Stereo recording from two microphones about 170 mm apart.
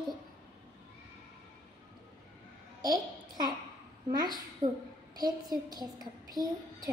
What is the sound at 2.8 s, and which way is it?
A child's voice, 20° right (ahead or behind).